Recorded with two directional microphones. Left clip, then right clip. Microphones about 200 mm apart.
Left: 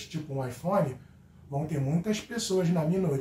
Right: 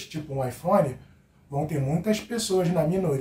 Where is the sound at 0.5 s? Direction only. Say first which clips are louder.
Right 7 dB; 15° right (ahead or behind).